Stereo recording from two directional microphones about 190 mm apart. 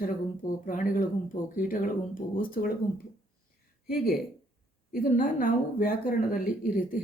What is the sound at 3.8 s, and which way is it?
Speech, 50° left (ahead or behind).